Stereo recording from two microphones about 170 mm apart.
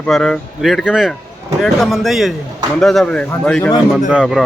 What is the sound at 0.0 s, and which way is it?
A man's voice, 5° left (ahead or behind).